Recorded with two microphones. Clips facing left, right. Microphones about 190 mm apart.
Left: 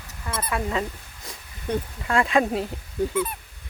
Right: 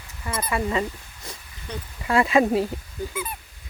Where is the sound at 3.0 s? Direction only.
70° left (ahead or behind).